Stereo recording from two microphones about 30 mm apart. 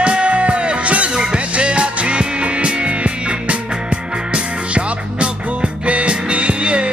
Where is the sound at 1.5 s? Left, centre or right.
Right.